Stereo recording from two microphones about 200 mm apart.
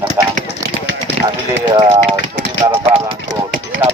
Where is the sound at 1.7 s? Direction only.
25° right (ahead or behind).